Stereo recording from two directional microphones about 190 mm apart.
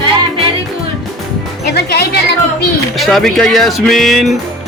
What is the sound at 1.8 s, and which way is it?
Music, 60° left (ahead or behind).